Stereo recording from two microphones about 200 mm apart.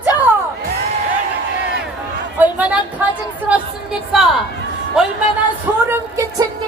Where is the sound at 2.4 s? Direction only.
5° right (ahead or behind).